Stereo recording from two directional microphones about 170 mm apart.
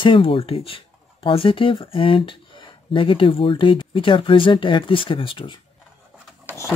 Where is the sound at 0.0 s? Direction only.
30° left (ahead or behind).